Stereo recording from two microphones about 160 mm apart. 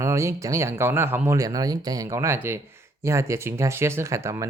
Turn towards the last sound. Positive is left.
turn(degrees=-20)  # may be behind; listen again after turning